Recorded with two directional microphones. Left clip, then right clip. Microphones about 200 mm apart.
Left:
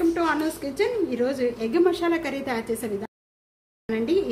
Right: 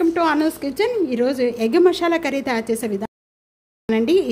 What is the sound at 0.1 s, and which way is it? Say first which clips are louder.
Speech: right 6 dB; 45° right (ahead or behind).